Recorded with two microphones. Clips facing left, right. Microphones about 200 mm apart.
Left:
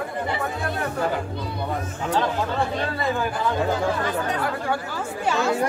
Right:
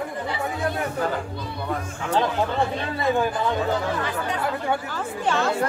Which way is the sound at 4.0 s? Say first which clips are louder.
Left 2 dB; 40° left (ahead or behind).